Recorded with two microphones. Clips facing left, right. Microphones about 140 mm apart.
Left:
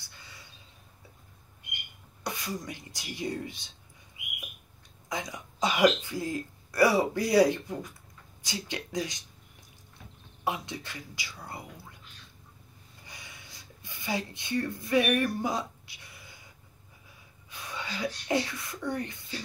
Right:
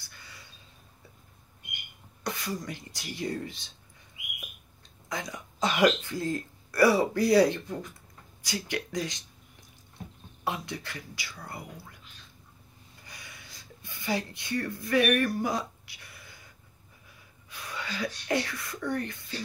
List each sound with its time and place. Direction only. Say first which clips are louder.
0.0 s a sound: even; 20° left (ahead or behind)
2.2 s speech: right 1 dB; 20° left (ahead or behind)
5.1 s speech: even; 15° left (ahead or behind)
10.4 s speech: left 1 dB; 20° left (ahead or behind)
13.0 s a sound: even; 20° left (ahead or behind)
17.6 s speech: even; 20° left (ahead or behind)